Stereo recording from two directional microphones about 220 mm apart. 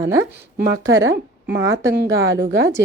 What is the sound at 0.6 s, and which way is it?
Speech, 50° right (ahead or behind).